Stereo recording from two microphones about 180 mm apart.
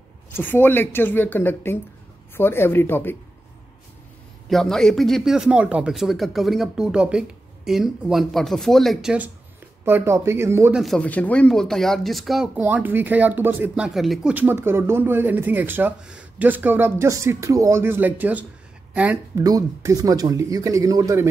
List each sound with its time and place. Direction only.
0.3 s a woman's voice: 10° left (ahead or behind)
4.5 s speech: centre (ahead or behind); by 10.8 s 15° right (ahead or behind)
10.8 s speech: 5° left (ahead or behind)
19.4 s speech: 20° right (ahead or behind)